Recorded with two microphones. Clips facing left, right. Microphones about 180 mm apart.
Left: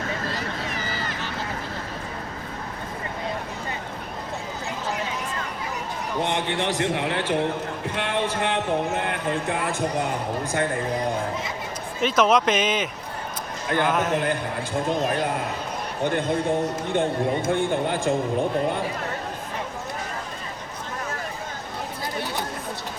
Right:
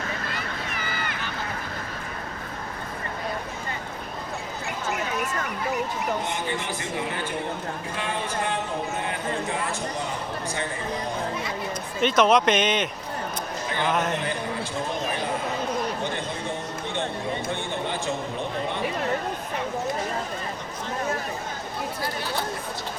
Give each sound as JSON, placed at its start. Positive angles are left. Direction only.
{"t": 0.9, "sound": "vehicle", "side_deg": 35}
{"t": 6.2, "sound": "a man's voice", "side_deg": 75}
{"t": 11.9, "sound": "a man's voice", "side_deg": 5}
{"t": 14.2, "sound": "speech", "side_deg": 55}
{"t": 17.4, "sound": "speech", "side_deg": 50}